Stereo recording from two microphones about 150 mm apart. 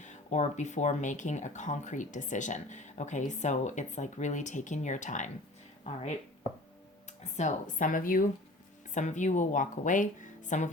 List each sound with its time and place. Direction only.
0.0 s speech: 50° left (ahead or behind)
7.3 s speech: 55° left (ahead or behind)
9.0 s speech: 55° left (ahead or behind)